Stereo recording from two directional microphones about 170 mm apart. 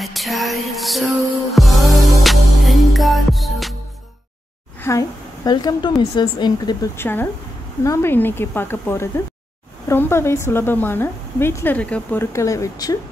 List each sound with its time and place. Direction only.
0.0 s music: centre (ahead or behind)
4.8 s a woman's voice: 20° left (ahead or behind)